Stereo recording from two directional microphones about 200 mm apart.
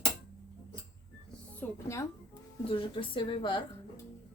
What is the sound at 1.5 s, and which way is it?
Speech, 10° left (ahead or behind).